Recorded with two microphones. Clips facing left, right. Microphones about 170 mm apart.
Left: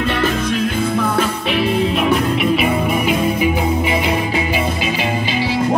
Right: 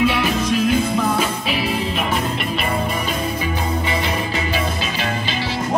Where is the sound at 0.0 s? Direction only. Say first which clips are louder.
Even; 50° left (ahead or behind).